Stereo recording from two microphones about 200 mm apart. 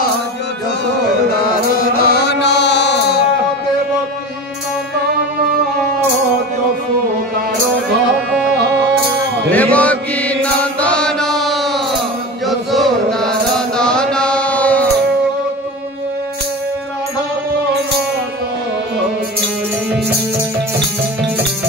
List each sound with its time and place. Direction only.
1.4 s mantra: 50° left (ahead or behind)
8.3 s music: 5° right (ahead or behind)
8.5 s music: 55° right (ahead or behind)
9.5 s mantra: 5° left (ahead or behind)